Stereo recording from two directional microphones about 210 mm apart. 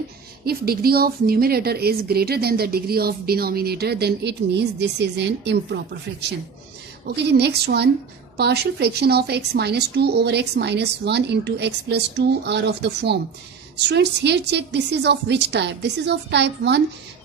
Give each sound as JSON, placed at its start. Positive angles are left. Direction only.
{"t": 0.5, "sound": "a woman's voice", "side_deg": -45}
{"t": 7.2, "sound": "a woman's voice", "side_deg": -50}